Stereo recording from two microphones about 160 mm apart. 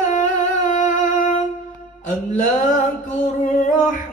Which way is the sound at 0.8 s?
55° left (ahead or behind).